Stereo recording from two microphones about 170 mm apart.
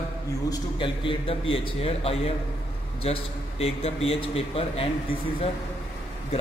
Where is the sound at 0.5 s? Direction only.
30° left (ahead or behind).